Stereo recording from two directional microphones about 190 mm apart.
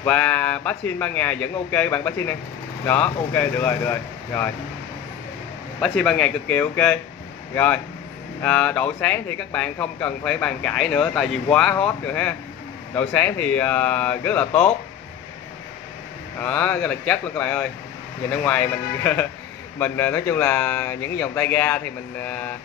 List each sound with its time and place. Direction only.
0.0 s speech: 10° left (ahead or behind)
5.8 s speech: 5° left (ahead or behind)
16.3 s speech: 10° left (ahead or behind)
19.8 s speech: 10° left (ahead or behind)